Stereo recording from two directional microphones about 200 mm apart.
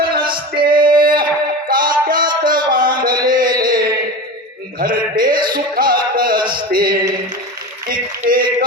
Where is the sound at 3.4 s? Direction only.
20° right (ahead or behind).